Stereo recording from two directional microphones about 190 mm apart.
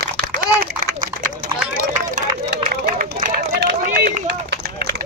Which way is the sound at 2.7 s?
55° right (ahead or behind).